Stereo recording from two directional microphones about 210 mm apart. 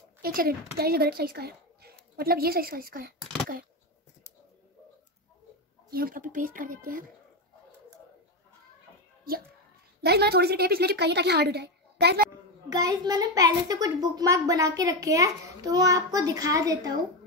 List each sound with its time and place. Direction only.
0.2 s speech: 45° right (ahead or behind)
5.9 s speech: 45° right (ahead or behind)
10.0 s a woman's voice: 50° right (ahead or behind)
12.6 s a child's voice: 20° right (ahead or behind)